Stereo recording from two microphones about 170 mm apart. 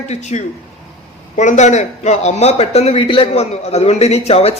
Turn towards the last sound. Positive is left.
turn(degrees=35)  # may be behind; listen again after turning